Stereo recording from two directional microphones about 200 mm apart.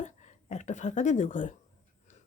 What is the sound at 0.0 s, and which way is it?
Speech, 35° left (ahead or behind).